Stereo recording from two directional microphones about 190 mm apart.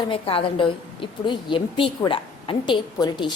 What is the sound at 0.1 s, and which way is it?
A woman's voice, 30° left (ahead or behind).